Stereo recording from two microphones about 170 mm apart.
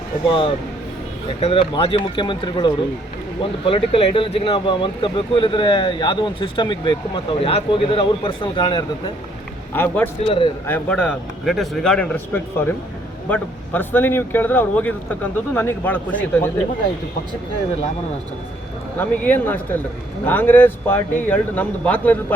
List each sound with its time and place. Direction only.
0.3 s speech: 30° left (ahead or behind)
9.7 s speech: 10° left (ahead or behind)
10.2 s speech: 30° left (ahead or behind)
10.7 s speech: 10° left (ahead or behind)
18.9 s speech: 10° left (ahead or behind)